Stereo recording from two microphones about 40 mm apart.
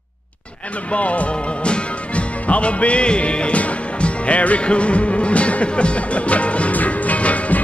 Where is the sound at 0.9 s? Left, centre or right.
Left.